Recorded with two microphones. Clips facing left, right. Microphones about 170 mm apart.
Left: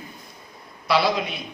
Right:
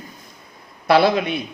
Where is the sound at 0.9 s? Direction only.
55° right (ahead or behind).